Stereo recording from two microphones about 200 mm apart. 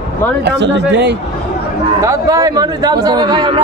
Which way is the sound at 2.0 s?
15° right (ahead or behind).